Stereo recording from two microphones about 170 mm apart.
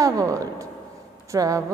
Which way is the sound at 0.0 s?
20° right (ahead or behind).